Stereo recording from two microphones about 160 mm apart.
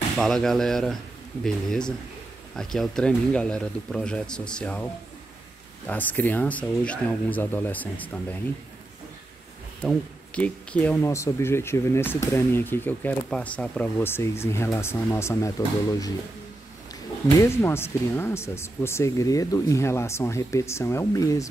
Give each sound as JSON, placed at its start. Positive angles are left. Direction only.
{"t": 0.2, "sound": "speech", "side_deg": 5}
{"t": 9.8, "sound": "speech", "side_deg": 5}
{"t": 17.4, "sound": "speech", "side_deg": 15}